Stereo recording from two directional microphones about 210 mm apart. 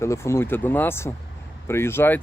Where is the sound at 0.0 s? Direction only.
15° left (ahead or behind).